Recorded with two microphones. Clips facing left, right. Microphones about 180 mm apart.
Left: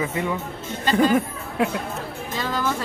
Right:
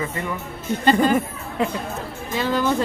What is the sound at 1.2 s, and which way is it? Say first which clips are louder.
Chatter: even; 5° left (ahead or behind).